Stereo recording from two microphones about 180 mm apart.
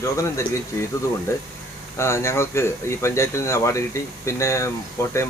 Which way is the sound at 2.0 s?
15° left (ahead or behind).